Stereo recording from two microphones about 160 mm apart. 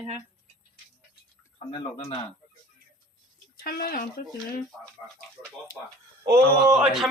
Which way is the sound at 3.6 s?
70° left (ahead or behind).